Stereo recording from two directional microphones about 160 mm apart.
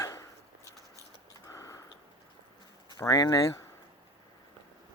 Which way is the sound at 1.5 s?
20° left (ahead or behind).